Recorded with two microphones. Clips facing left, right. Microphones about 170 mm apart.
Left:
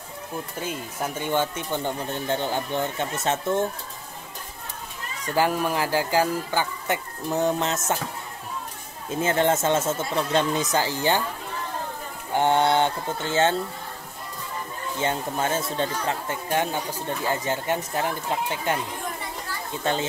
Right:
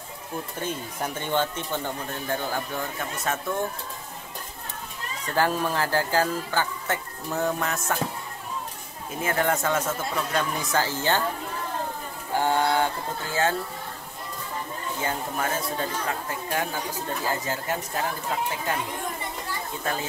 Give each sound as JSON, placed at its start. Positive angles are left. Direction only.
{"t": 0.6, "sound": "speech", "side_deg": 10}
{"t": 5.2, "sound": "speech", "side_deg": 10}
{"t": 9.2, "sound": "speech", "side_deg": 25}
{"t": 12.4, "sound": "speech", "side_deg": 20}
{"t": 15.0, "sound": "speech", "side_deg": 25}
{"t": 19.8, "sound": "speech", "side_deg": 25}